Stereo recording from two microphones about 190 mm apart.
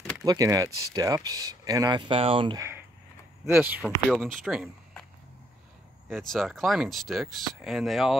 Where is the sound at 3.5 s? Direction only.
5° right (ahead or behind).